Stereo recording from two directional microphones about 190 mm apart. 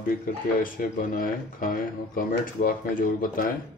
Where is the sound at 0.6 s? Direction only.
45° left (ahead or behind).